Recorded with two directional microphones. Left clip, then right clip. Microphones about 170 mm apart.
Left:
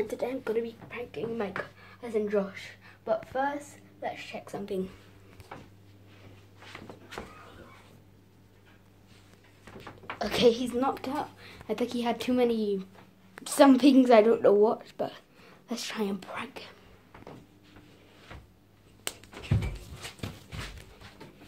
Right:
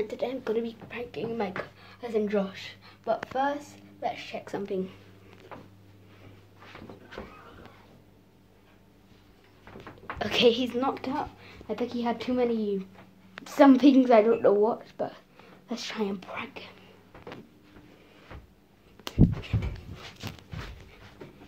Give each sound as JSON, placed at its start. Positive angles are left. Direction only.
{"t": 0.1, "sound": "speech", "side_deg": 0}
{"t": 0.4, "sound": "a woman's voice", "side_deg": -15}
{"t": 4.6, "sound": "a woman's voice", "side_deg": -5}
{"t": 10.1, "sound": "a sound", "side_deg": -35}
{"t": 10.4, "sound": "a woman's voice", "side_deg": -25}
{"t": 10.8, "sound": "speech", "side_deg": -5}
{"t": 11.7, "sound": "a woman's voice", "side_deg": 20}
{"t": 13.9, "sound": "a woman's voice", "side_deg": 10}